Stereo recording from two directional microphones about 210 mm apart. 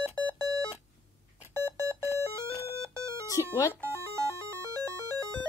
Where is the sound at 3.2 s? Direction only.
15° left (ahead or behind).